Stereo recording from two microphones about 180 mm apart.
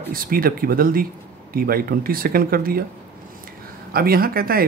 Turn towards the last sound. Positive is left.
turn(degrees=-55)  # may be behind; listen again after turning